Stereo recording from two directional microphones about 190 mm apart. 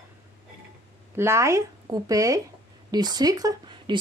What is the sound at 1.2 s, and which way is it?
Speech, 15° right (ahead or behind).